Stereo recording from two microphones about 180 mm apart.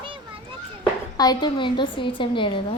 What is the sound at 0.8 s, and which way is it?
A woman's voice, 20° left (ahead or behind).